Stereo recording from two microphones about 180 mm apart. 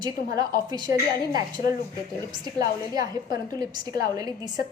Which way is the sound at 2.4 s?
20° right (ahead or behind).